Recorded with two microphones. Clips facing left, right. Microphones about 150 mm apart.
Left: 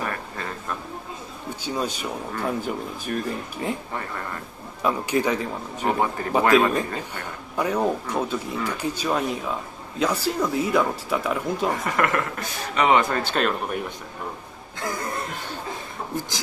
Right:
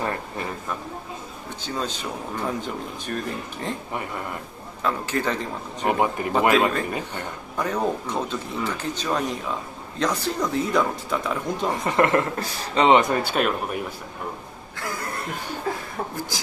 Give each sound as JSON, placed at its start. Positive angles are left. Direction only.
{"t": 0.0, "sound": "a sound", "side_deg": -25}
{"t": 1.6, "sound": "speech", "side_deg": 10}
{"t": 3.9, "sound": "speech", "side_deg": -15}
{"t": 4.8, "sound": "speech", "side_deg": 15}
{"t": 5.9, "sound": "speech", "side_deg": -15}
{"t": 7.5, "sound": "speech", "side_deg": 10}
{"t": 11.7, "sound": "speech", "side_deg": -25}
{"t": 13.1, "sound": "speech", "side_deg": -10}